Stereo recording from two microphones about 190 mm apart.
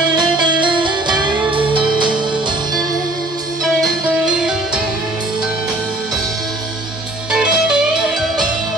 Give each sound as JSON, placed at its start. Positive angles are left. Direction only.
{"t": 0.6, "sound": "music", "side_deg": -25}
{"t": 7.2, "sound": "music", "side_deg": -5}